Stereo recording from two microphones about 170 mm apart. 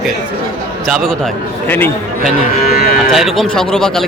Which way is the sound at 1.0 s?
5° left (ahead or behind).